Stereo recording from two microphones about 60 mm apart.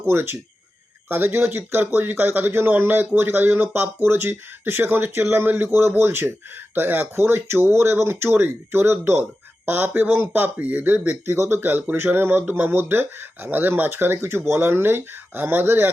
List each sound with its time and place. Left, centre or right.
0.0 s speech: right
11.1 s speech: right